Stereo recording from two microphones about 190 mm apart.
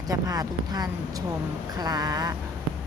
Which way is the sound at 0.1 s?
20° right (ahead or behind).